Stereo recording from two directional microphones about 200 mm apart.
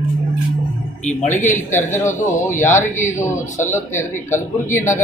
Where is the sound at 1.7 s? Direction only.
10° left (ahead or behind).